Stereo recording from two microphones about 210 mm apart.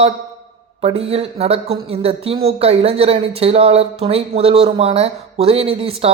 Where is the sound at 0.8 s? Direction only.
30° right (ahead or behind).